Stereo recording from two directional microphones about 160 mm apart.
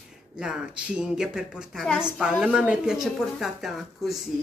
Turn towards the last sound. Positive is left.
turn(degrees=0)  # may be behind; listen again after turning